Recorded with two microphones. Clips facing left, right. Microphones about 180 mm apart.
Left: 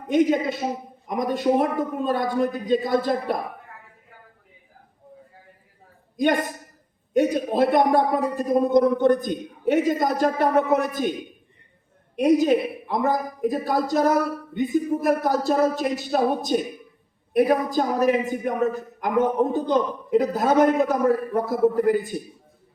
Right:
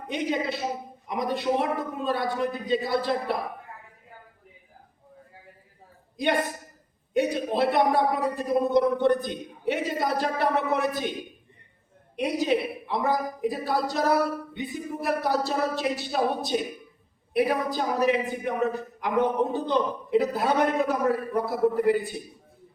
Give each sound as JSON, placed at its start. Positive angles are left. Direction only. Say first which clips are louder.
{"t": 0.1, "sound": "speech", "louder": "left 8 dB", "side_deg": 45}
{"t": 7.1, "sound": "speech", "louder": "left 4 dB", "side_deg": 45}
{"t": 12.4, "sound": "speech", "louder": "left 5 dB", "side_deg": 45}